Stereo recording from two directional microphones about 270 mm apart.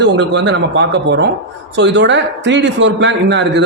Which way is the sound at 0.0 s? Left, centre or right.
Right.